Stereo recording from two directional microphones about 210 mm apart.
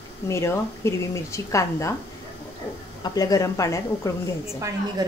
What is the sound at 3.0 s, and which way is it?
Speech, 15° left (ahead or behind).